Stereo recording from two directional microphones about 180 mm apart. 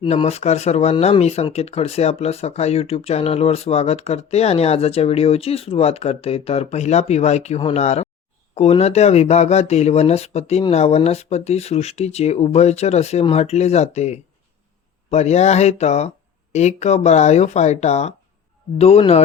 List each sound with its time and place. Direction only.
0.0 s speech: 30° left (ahead or behind)